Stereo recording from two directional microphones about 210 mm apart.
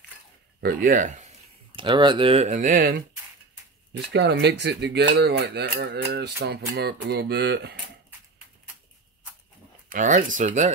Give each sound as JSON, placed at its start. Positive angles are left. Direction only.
{"t": 0.6, "sound": "speech", "side_deg": -45}
{"t": 1.8, "sound": "speech", "side_deg": -20}
{"t": 3.9, "sound": "speech", "side_deg": -55}
{"t": 9.8, "sound": "speech", "side_deg": -35}